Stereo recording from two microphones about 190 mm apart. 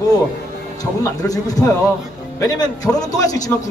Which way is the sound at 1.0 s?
20° left (ahead or behind).